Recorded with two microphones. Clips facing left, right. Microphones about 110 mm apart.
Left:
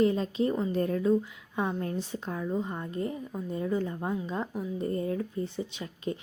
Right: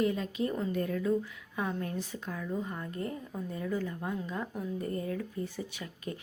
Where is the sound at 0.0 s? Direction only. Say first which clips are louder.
Left 5 dB; 30° left (ahead or behind).